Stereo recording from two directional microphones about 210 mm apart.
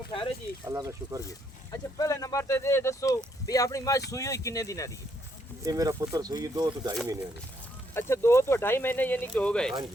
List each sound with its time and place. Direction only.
0.6 s speech: 15° right (ahead or behind)
1.7 s speech: 15° left (ahead or behind)
5.6 s speech: 15° right (ahead or behind)
7.9 s speech: 10° left (ahead or behind)